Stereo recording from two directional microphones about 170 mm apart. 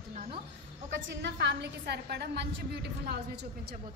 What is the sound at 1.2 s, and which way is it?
A woman's voice, 90° right.